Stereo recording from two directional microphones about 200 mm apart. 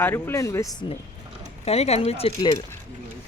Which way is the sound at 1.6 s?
30° left (ahead or behind).